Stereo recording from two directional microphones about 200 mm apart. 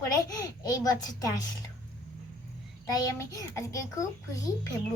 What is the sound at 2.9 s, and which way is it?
Child singing, 15° left (ahead or behind).